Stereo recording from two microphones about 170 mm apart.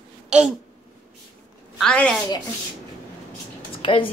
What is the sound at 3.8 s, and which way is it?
Speech, 30° left (ahead or behind).